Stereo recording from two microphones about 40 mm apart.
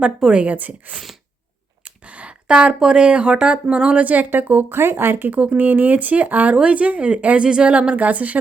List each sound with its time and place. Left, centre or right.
0.0 s speech: right
0.4 s speech: right
1.8 s a sound: right
2.9 s speech: right
4.7 s speech: right
5.3 s speech: right
5.5 s speech: right
6.6 s speech: right
7.4 s speech: right
7.7 s speech: right